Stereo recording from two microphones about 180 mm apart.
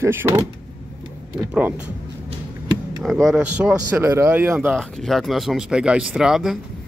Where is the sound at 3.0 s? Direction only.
Centre (ahead or behind).